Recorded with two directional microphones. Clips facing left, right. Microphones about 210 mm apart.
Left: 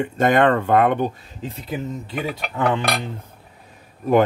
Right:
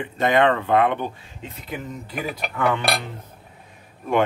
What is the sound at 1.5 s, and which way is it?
Speech, 30° left (ahead or behind).